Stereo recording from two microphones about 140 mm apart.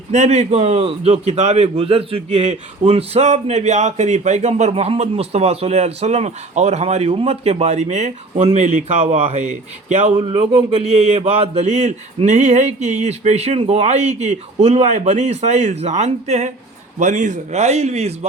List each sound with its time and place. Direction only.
0.1 s a man's voice: 55° right (ahead or behind)
10.2 s a man's voice: 40° right (ahead or behind)